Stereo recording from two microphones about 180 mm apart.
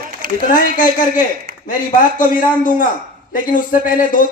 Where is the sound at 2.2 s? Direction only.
50° left (ahead or behind).